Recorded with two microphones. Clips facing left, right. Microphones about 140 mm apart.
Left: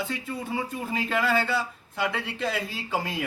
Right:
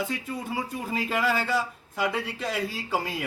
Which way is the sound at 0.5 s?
10° right (ahead or behind).